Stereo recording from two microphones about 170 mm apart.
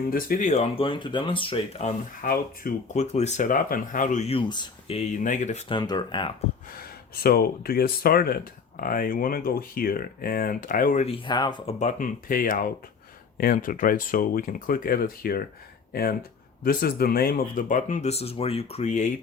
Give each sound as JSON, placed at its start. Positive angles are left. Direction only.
{"t": 0.1, "sound": "speech", "side_deg": 55}
{"t": 2.2, "sound": "speech", "side_deg": 60}
{"t": 2.9, "sound": "speech", "side_deg": 40}
{"t": 4.9, "sound": "speech", "side_deg": 45}
{"t": 5.6, "sound": "speech", "side_deg": 25}
{"t": 6.7, "sound": "speech", "side_deg": 65}
{"t": 11.3, "sound": "speech", "side_deg": 25}
{"t": 11.8, "sound": "speech", "side_deg": 45}